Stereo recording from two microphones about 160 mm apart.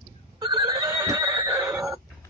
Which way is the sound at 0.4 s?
25° right (ahead or behind).